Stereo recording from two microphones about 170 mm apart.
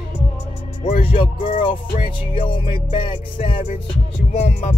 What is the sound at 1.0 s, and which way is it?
Music, 35° left (ahead or behind).